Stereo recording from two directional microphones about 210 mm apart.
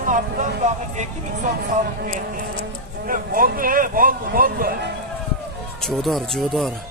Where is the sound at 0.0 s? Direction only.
35° right (ahead or behind).